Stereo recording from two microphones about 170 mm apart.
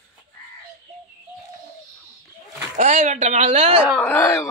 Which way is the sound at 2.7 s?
45° right (ahead or behind).